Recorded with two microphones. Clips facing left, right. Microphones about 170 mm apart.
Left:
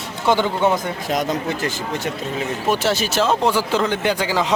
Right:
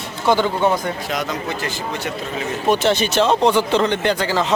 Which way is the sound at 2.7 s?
5° left (ahead or behind).